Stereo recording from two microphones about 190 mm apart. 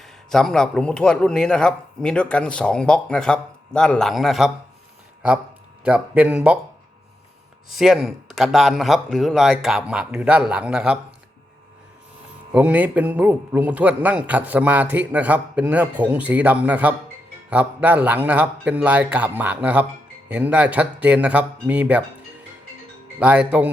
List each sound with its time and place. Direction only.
0.0 s a man's voice: centre (ahead or behind)
5.8 s a man's voice: 5° right (ahead or behind)
7.8 s a man's voice: centre (ahead or behind)
12.5 s a man's voice: 10° right (ahead or behind)
23.2 s a man's voice: 10° right (ahead or behind)